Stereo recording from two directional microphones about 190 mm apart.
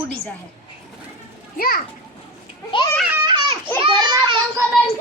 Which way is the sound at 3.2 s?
25° right (ahead or behind).